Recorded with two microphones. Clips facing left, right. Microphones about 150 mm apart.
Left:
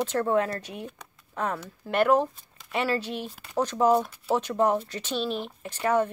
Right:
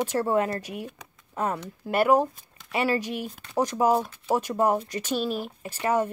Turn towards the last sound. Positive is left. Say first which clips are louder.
# even
turn(degrees=-10)  # may be behind; listen again after turning